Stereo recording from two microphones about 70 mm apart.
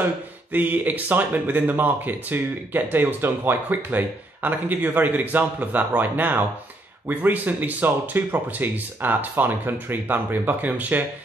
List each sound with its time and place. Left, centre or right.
0.5 s speech: right